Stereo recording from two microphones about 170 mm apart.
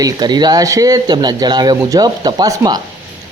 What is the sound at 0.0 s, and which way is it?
Speech, 25° right (ahead or behind).